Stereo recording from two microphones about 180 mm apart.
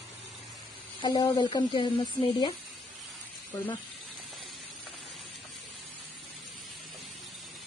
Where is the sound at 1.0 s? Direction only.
25° left (ahead or behind).